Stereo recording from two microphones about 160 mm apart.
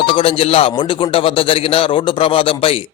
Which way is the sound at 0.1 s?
35° left (ahead or behind).